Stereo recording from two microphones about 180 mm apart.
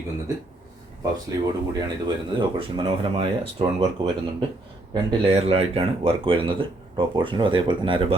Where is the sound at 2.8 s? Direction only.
25° right (ahead or behind).